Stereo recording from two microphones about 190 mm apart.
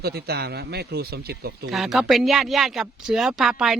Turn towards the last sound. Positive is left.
turn(degrees=0)  # may be behind; listen again after turning